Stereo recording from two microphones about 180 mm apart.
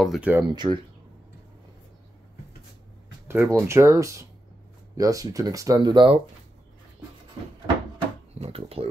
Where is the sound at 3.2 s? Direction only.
15° right (ahead or behind).